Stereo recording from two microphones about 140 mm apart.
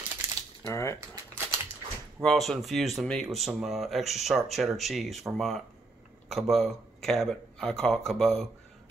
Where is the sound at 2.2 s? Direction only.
Centre (ahead or behind).